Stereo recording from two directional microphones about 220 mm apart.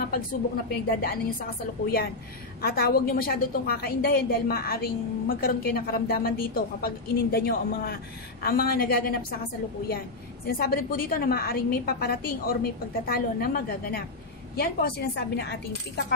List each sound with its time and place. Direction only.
0.0 s a sound: 45° left (ahead or behind)
0.8 s a woman's voice: 40° left (ahead or behind)
2.6 s a woman's voice: 45° left (ahead or behind)